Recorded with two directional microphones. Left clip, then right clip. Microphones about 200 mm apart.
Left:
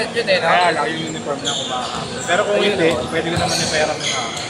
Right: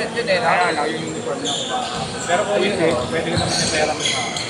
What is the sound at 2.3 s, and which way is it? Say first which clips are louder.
Speech: left 2 dB; 50° left (ahead or behind).